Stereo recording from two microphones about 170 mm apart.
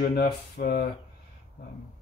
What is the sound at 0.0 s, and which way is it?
Speech, 60° left (ahead or behind).